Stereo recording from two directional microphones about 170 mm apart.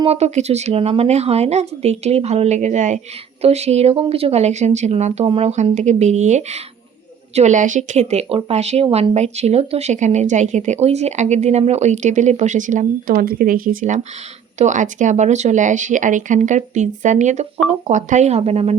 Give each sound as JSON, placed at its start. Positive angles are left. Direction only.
{"t": 0.0, "sound": "speech", "side_deg": -40}